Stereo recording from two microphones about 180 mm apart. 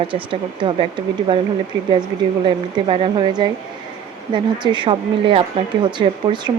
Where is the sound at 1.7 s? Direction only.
90° right.